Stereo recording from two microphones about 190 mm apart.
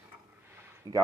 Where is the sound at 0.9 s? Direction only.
20° right (ahead or behind).